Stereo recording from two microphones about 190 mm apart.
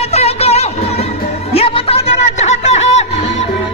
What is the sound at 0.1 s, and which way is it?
Music, 35° left (ahead or behind).